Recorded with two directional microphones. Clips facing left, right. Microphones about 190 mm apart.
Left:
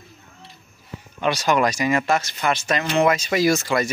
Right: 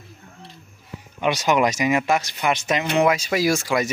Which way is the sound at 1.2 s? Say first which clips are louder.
Even; 20° right (ahead or behind).